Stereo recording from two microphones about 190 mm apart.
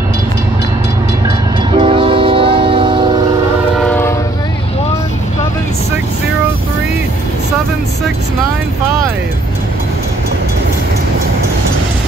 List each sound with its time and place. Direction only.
1.8 s train: 25° right (ahead or behind)
3.8 s train: 10° left (ahead or behind)